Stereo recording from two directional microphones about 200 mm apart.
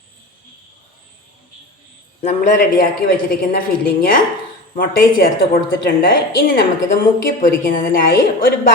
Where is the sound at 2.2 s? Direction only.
45° left (ahead or behind).